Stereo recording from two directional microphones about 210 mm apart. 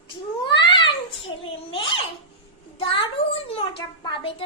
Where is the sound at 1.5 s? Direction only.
25° left (ahead or behind).